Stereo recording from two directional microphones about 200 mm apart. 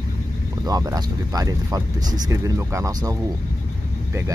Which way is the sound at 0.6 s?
20° right (ahead or behind).